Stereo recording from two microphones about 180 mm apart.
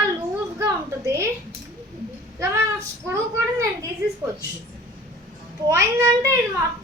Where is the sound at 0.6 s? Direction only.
15° right (ahead or behind).